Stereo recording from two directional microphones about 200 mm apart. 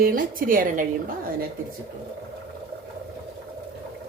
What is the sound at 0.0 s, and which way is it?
Speech, 45° right (ahead or behind).